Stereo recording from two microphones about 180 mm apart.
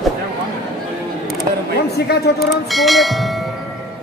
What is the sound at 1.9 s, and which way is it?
Speech, 60° left (ahead or behind).